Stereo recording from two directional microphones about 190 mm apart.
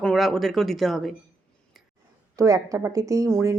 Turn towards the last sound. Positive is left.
turn(degrees=-15)  # may be behind; listen again after turning